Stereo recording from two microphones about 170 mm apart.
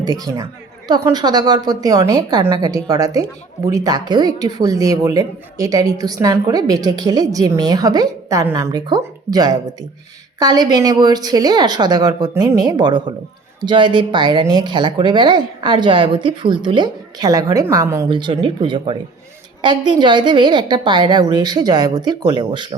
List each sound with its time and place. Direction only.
0.0 s a woman's voice: 20° right (ahead or behind)
18.1 s a woman's voice: 30° right (ahead or behind)